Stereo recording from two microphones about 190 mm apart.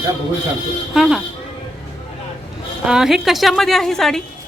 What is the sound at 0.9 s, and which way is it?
Speech, centre (ahead or behind).